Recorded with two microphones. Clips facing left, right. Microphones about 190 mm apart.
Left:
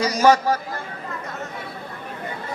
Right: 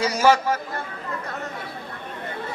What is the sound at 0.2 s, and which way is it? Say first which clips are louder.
Speech: left 2 dB; 40° left (ahead or behind).